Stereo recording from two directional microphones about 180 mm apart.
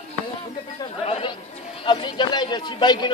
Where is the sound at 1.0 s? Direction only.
30° left (ahead or behind).